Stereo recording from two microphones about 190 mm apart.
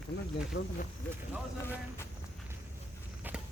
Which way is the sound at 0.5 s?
55° left (ahead or behind).